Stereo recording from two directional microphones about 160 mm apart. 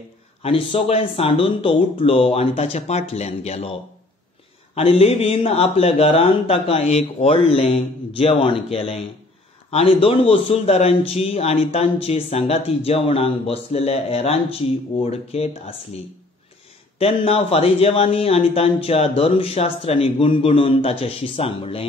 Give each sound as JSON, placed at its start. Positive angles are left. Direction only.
{"t": 0.4, "sound": "a man's voice", "side_deg": 35}
{"t": 4.7, "sound": "a man's voice", "side_deg": 35}
{"t": 17.0, "sound": "a man's voice", "side_deg": 35}